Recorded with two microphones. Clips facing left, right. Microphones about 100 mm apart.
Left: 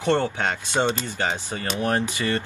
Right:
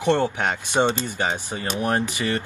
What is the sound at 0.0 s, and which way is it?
Speech, 20° right (ahead or behind).